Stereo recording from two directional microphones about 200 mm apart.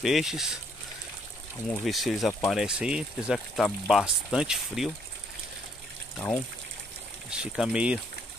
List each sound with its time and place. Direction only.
0.0 s speech: centre (ahead or behind)
1.7 s speech: centre (ahead or behind)
6.1 s speech: 10° left (ahead or behind)
7.2 s speech: 5° right (ahead or behind)